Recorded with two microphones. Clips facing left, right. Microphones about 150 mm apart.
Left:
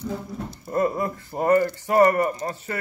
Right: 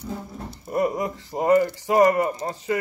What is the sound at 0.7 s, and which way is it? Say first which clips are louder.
Speech: even; 15° right (ahead or behind).